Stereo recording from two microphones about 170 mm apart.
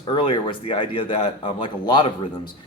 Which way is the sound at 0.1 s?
30° left (ahead or behind).